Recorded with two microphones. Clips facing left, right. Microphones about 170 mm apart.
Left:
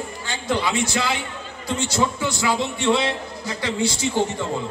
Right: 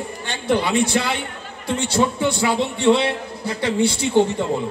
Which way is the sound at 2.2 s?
30° right (ahead or behind).